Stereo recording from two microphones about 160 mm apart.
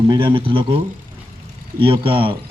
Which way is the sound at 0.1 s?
30° right (ahead or behind).